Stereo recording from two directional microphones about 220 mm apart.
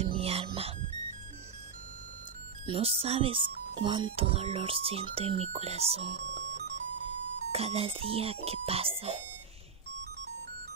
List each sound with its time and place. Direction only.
0.0 s music: 25° right (ahead or behind)
2.6 s speech: 25° right (ahead or behind)
7.5 s speech: 25° right (ahead or behind)